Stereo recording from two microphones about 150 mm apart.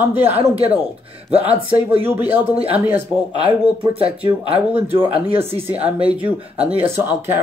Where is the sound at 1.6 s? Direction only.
35° right (ahead or behind).